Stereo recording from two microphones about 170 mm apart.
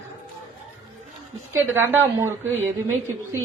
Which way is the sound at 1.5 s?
15° right (ahead or behind).